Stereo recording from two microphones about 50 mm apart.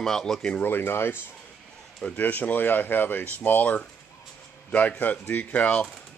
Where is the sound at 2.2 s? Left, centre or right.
Left.